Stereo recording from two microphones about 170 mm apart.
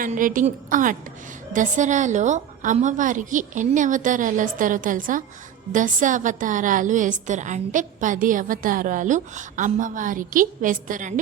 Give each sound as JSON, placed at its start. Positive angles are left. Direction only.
{"t": 0.0, "sound": "a woman's voice", "side_deg": -55}